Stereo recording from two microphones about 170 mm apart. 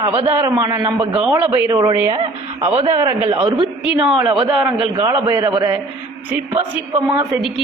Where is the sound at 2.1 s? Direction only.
35° right (ahead or behind).